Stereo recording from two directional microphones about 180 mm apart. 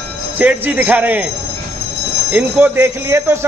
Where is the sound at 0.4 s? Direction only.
10° right (ahead or behind).